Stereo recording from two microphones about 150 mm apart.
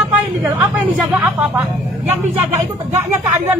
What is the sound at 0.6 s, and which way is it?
Speech, 5° right (ahead or behind).